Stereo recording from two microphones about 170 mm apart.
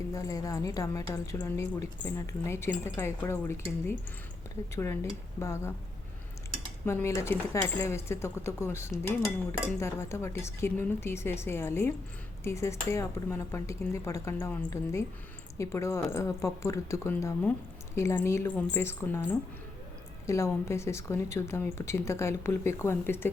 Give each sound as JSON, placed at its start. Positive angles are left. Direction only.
{"t": 0.1, "sound": "speech", "side_deg": 20}
{"t": 4.7, "sound": "speech", "side_deg": 15}
{"t": 6.8, "sound": "speech", "side_deg": 15}